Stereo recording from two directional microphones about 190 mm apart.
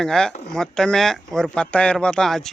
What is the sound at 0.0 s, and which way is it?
Speech, 5° left (ahead or behind).